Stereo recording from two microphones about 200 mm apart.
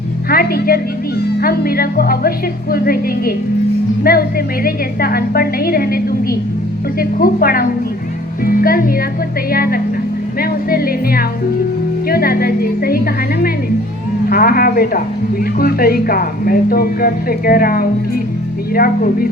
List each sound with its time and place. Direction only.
0.3 s a woman's voice: 50° left (ahead or behind)
14.3 s a woman's voice: 45° left (ahead or behind)